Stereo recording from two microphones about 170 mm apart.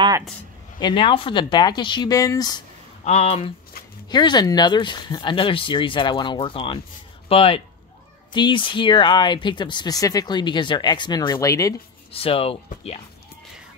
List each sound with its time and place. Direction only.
0.7 s speech: 30° left (ahead or behind)
3.1 s speech: 40° left (ahead or behind)
4.1 s speech: 25° left (ahead or behind)
12.1 s speech: 35° left (ahead or behind)